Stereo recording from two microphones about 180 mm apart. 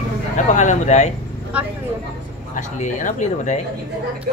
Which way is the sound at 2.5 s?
45° left (ahead or behind).